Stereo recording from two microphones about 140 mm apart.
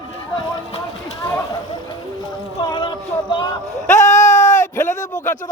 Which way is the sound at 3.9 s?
60° left (ahead or behind).